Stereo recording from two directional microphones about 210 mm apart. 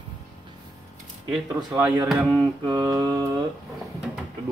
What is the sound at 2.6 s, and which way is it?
Mantra, 20° right (ahead or behind).